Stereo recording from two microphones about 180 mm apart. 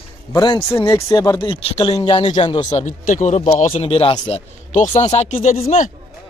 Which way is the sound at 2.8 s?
45° left (ahead or behind).